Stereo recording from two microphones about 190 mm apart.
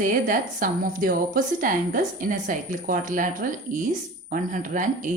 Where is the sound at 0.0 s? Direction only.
45° right (ahead or behind).